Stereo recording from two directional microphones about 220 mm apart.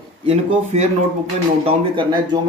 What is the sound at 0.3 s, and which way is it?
Speech, 30° right (ahead or behind).